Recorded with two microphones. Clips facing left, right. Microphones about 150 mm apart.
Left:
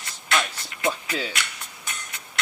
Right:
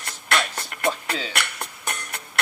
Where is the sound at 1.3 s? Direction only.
60° right (ahead or behind).